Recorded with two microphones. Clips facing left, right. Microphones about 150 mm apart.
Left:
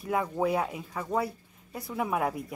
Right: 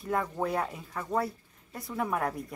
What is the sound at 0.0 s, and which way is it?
Speech, 5° left (ahead or behind).